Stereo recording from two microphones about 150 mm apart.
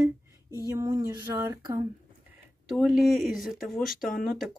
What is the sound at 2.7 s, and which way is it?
A woman's voice, centre (ahead or behind).